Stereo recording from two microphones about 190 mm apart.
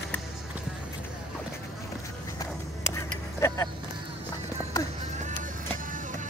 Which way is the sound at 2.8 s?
15° left (ahead or behind).